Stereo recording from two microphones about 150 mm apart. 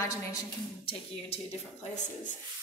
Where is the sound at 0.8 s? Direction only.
40° left (ahead or behind).